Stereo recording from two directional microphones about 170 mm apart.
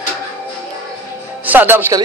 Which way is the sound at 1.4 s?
10° right (ahead or behind).